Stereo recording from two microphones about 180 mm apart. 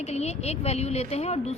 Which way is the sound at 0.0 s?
35° left (ahead or behind).